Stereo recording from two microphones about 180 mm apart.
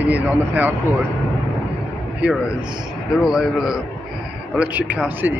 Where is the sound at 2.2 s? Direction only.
5° right (ahead or behind).